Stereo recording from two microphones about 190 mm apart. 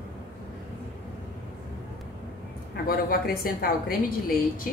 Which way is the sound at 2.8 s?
50° left (ahead or behind).